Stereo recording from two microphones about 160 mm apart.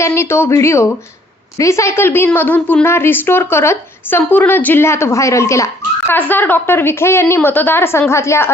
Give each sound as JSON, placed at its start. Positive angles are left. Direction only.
{"t": 0.0, "sound": "a woman's voice", "side_deg": 15}